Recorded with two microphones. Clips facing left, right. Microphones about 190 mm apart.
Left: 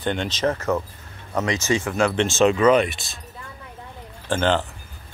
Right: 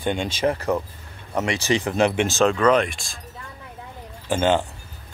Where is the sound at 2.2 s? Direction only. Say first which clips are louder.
Left 2 dB; 5° left (ahead or behind).